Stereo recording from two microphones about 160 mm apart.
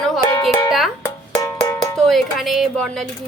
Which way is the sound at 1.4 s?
20° left (ahead or behind).